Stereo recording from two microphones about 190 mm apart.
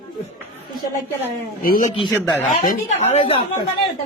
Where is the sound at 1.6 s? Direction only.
45° left (ahead or behind).